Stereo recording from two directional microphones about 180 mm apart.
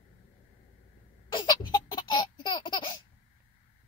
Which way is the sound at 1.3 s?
20° left (ahead or behind).